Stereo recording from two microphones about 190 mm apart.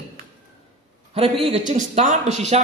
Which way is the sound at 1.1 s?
30° right (ahead or behind).